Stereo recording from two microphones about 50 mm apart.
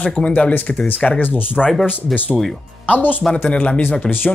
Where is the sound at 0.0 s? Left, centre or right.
Left.